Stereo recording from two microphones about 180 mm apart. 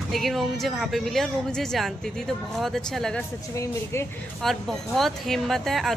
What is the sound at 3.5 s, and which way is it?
Speech, 15° left (ahead or behind).